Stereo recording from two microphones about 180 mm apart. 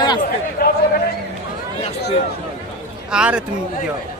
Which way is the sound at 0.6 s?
60° left (ahead or behind).